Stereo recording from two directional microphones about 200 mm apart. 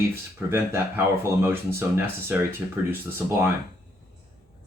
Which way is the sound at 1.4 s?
10° right (ahead or behind).